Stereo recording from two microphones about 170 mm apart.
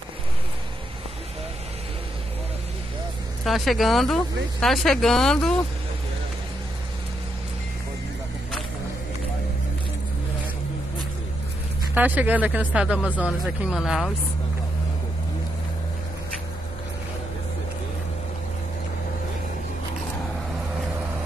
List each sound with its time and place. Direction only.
3.4 s speech: centre (ahead or behind)
11.9 s speech: 10° right (ahead or behind)